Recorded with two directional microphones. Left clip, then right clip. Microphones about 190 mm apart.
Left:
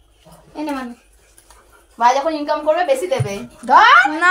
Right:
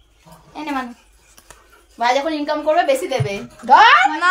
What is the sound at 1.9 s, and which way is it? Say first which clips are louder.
Speech: left 3 dB; 20° right (ahead or behind).